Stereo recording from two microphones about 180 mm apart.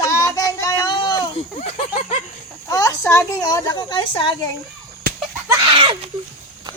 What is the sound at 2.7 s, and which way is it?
A woman's voice, 20° left (ahead or behind).